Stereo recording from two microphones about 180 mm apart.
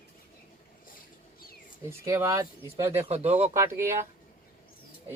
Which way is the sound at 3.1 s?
35° right (ahead or behind).